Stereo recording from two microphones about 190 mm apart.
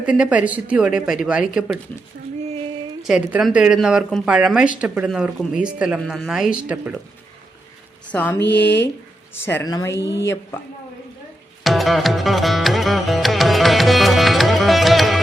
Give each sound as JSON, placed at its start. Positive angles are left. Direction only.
{"t": 0.0, "sound": "speech", "side_deg": -5}
{"t": 3.0, "sound": "speech", "side_deg": -5}
{"t": 8.1, "sound": "speech", "side_deg": 10}
{"t": 8.4, "sound": "speech", "side_deg": 65}
{"t": 9.4, "sound": "speech", "side_deg": 10}
{"t": 11.6, "sound": "music", "side_deg": 0}